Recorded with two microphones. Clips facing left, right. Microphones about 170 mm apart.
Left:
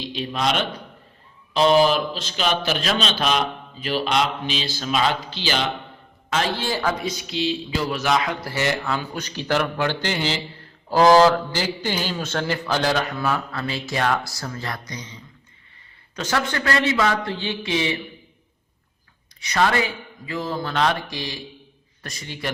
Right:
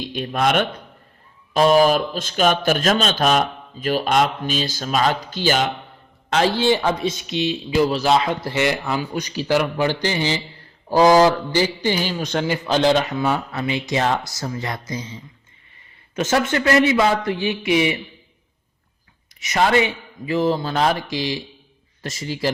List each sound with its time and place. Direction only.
0.0 s speech: 50° right (ahead or behind)
1.7 s speech: 45° right (ahead or behind)
6.3 s speech: 30° right (ahead or behind)
19.4 s speech: 20° right (ahead or behind)